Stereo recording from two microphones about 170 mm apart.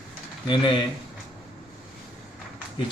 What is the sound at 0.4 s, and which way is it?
Speech, 30° left (ahead or behind).